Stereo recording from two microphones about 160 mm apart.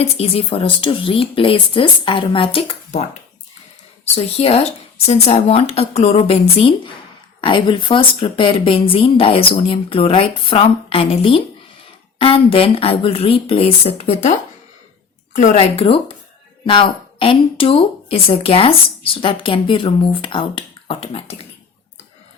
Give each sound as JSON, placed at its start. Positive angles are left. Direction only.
{"t": 0.0, "sound": "a woman's voice", "side_deg": 40}
{"t": 4.0, "sound": "a woman's voice", "side_deg": 40}
{"t": 15.5, "sound": "a woman's voice", "side_deg": 35}